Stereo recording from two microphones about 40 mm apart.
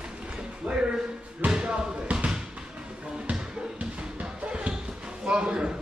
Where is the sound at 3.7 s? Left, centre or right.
Right.